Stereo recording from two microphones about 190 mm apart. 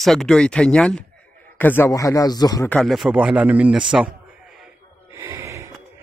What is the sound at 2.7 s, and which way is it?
Speech, centre (ahead or behind).